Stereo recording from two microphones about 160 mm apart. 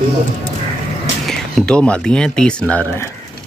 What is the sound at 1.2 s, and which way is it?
Speech, 5° left (ahead or behind).